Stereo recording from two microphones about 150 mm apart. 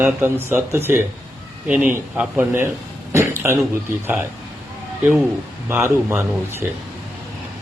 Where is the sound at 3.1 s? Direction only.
15° right (ahead or behind).